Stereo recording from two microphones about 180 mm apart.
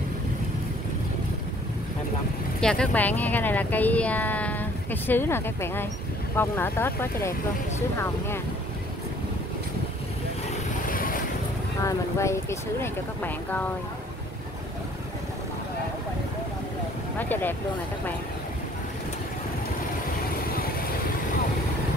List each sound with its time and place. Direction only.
2.6 s speech: 5° left (ahead or behind)
10.9 s boat: 50° left (ahead or behind)
11.8 s speech: 15° left (ahead or behind)
17.2 s speech: 10° left (ahead or behind)